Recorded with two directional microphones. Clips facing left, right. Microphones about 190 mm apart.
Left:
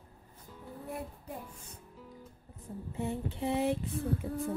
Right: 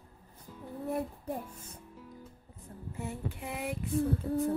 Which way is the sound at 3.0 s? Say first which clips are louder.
Left 5 dB; 25° left (ahead or behind).